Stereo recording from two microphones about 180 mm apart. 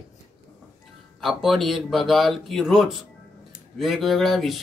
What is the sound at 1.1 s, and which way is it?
Speech, centre (ahead or behind).